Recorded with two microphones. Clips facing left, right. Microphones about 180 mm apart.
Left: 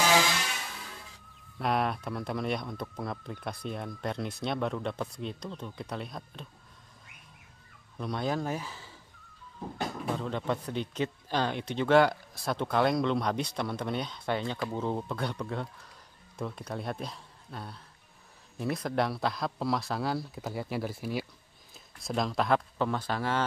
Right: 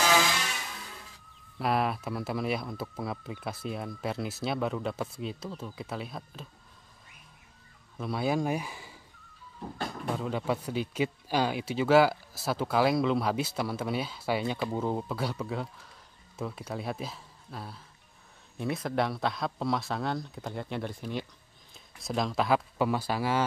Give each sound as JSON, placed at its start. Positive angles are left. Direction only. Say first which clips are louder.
{"t": 1.6, "sound": "speech", "louder": "right 1 dB", "side_deg": -5}
{"t": 8.0, "sound": "speech", "louder": "right 2 dB", "side_deg": -5}
{"t": 10.0, "sound": "speech", "louder": "right 2 dB", "side_deg": -5}